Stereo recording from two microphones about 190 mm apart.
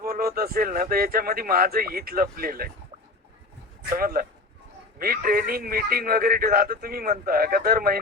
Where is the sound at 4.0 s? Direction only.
50° right (ahead or behind).